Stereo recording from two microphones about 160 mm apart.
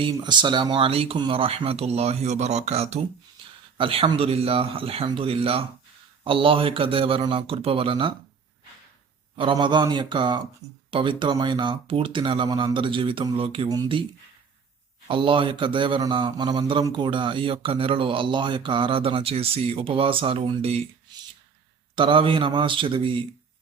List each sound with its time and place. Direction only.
0.0 s a man's voice: 25° right (ahead or behind)
9.3 s a man's voice: 30° right (ahead or behind)
15.0 s a man's voice: 30° right (ahead or behind)
21.9 s a man's voice: 30° right (ahead or behind)